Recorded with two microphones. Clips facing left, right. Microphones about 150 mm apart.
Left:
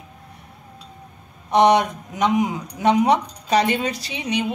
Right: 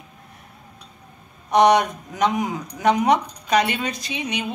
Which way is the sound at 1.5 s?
25° left (ahead or behind).